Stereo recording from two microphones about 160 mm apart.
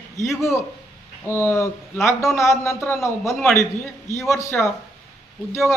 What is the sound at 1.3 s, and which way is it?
Speech, 15° left (ahead or behind).